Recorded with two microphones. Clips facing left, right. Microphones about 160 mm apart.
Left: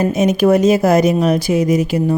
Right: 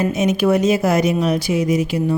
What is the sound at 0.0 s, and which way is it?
Speech, 40° left (ahead or behind).